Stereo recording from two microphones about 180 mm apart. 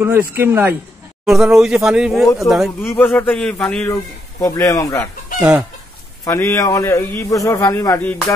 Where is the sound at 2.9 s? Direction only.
15° left (ahead or behind).